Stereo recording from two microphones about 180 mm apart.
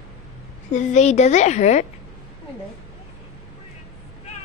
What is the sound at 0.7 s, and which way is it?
A woman's voice, 40° left (ahead or behind).